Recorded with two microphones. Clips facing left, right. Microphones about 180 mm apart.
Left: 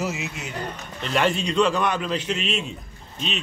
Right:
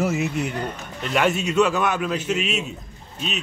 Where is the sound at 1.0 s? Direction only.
5° right (ahead or behind).